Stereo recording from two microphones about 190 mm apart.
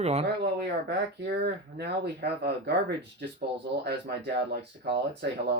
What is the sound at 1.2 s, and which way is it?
Speech, 60° right (ahead or behind).